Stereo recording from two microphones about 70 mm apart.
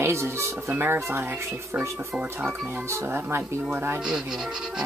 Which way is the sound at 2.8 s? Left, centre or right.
Right.